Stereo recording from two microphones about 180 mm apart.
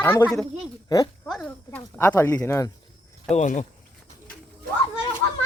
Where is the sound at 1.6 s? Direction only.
10° left (ahead or behind).